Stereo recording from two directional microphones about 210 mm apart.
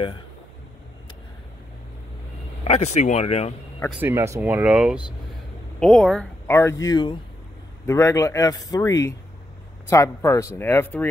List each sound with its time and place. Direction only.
2.6 s speech: 30° left (ahead or behind)
4.0 s speech: 10° right (ahead or behind); by 11.1 s 10° left (ahead or behind)